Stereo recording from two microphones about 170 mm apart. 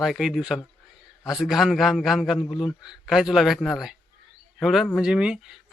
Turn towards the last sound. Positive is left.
turn(degrees=-5)  # may be behind; listen again after turning